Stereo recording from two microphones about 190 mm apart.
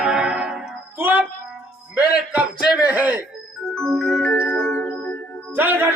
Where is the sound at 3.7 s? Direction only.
5° left (ahead or behind).